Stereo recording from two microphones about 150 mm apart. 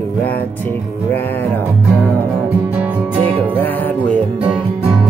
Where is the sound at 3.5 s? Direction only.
15° left (ahead or behind).